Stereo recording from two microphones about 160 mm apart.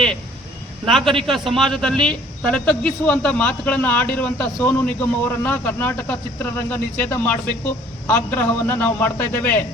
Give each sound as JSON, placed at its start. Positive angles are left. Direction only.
{"t": 0.9, "sound": "a man's voice", "side_deg": 0}